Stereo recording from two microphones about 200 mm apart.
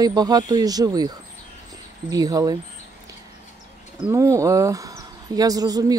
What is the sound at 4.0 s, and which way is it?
Speech, 15° right (ahead or behind).